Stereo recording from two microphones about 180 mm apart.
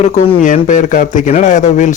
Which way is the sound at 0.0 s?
40° left (ahead or behind).